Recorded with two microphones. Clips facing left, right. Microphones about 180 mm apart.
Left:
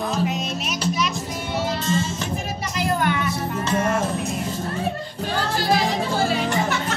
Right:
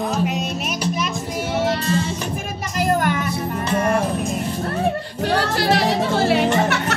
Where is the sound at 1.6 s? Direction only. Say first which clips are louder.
Even; 65° right (ahead or behind).